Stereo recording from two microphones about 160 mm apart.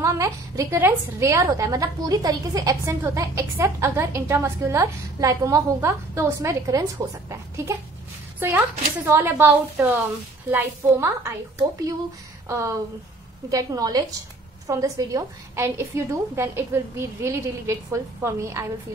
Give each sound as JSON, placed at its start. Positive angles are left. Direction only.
{"t": 0.0, "sound": "a woman's voice", "side_deg": -20}
{"t": 12.4, "sound": "a woman's voice", "side_deg": -20}